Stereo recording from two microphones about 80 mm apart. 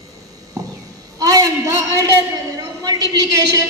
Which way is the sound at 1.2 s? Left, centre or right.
Right.